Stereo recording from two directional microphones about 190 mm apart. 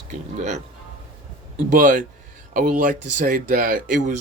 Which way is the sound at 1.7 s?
45° right (ahead or behind).